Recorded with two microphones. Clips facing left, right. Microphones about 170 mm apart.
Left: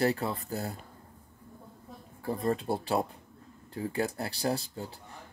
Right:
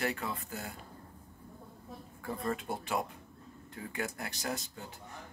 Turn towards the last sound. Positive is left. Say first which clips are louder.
# left 7 dB
turn(degrees=30)  # may be behind; listen again after turning